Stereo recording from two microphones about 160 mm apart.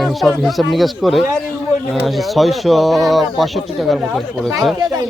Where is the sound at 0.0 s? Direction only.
Centre (ahead or behind).